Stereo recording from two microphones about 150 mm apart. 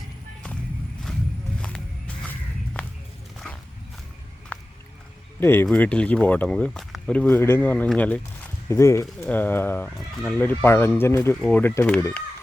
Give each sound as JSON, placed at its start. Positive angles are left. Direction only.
{"t": 1.6, "sound": "walk", "side_deg": 5}
{"t": 4.5, "sound": "music", "side_deg": 10}
{"t": 5.4, "sound": "speech", "side_deg": 15}